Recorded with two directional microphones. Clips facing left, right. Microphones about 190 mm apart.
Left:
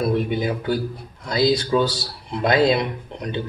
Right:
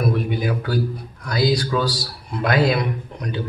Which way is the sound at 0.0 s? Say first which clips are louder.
Left 1 dB; 25° left (ahead or behind).